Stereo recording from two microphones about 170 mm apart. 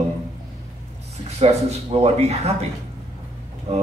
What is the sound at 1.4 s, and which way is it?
A man's voice, 40° right (ahead or behind).